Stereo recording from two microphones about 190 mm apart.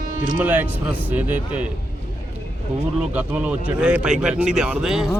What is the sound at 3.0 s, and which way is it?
Speech, 10° right (ahead or behind).